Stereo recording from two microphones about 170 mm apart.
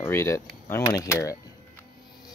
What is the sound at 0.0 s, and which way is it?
Speech, 15° left (ahead or behind).